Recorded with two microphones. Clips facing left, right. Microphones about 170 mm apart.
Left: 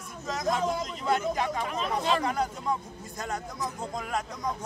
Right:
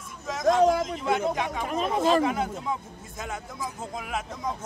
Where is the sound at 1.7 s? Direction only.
45° right (ahead or behind).